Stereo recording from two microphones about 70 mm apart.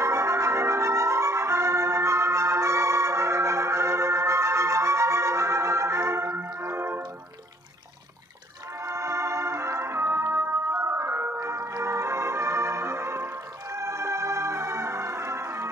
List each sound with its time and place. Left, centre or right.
0.0 s music: right
8.8 s music: right